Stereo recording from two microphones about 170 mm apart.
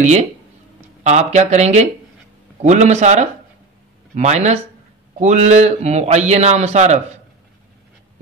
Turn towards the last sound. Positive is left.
turn(degrees=-45)  # may be behind; listen again after turning